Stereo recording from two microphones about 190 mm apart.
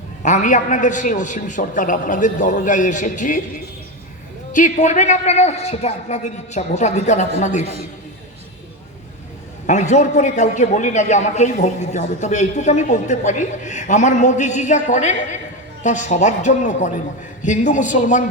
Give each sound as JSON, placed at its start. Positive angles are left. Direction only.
{"t": 0.2, "sound": "a man's voice", "side_deg": 40}
{"t": 9.6, "sound": "a man's voice", "side_deg": 40}